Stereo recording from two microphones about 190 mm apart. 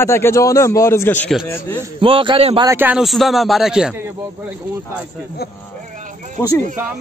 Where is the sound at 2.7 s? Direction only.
10° right (ahead or behind).